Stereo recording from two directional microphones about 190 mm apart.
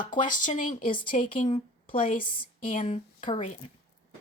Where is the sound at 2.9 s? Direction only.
35° left (ahead or behind).